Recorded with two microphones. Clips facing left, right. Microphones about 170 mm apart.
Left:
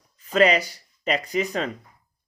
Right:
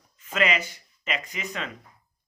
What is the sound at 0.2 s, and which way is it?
Speech, 35° left (ahead or behind).